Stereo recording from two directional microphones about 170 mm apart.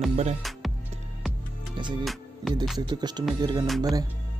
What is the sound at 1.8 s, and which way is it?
Speech, 30° right (ahead or behind).